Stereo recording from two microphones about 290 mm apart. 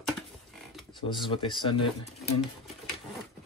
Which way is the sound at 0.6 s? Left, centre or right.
Centre.